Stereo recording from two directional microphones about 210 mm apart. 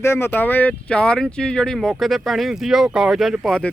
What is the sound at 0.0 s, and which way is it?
Speech, 10° left (ahead or behind).